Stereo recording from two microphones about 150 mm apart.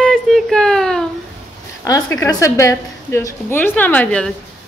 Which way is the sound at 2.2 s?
20° left (ahead or behind).